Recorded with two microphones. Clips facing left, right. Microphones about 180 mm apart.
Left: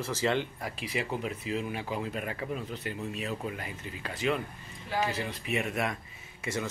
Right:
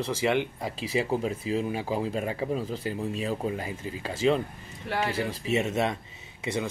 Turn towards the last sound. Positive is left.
turn(degrees=-15)  # may be behind; listen again after turning